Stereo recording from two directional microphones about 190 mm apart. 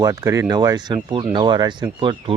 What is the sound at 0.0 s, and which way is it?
Speech, 15° right (ahead or behind).